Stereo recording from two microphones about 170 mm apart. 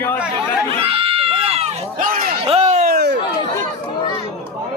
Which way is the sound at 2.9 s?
75° right (ahead or behind).